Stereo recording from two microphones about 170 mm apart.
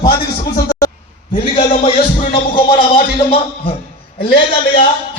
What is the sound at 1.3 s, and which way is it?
Speech, 35° left (ahead or behind).